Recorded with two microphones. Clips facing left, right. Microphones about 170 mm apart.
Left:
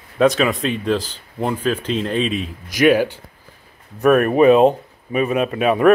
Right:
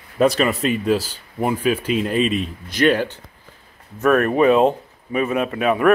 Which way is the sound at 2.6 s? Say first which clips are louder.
Left 4 dB; 10° left (ahead or behind).